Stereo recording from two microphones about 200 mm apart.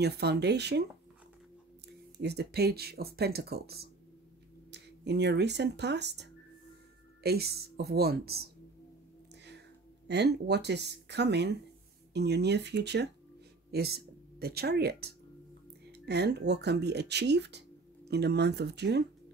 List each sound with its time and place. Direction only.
0.0 s speech: 55° right (ahead or behind)
2.1 s speech: 55° right (ahead or behind)
7.2 s speech: 50° right (ahead or behind)
10.0 s speech: 60° right (ahead or behind)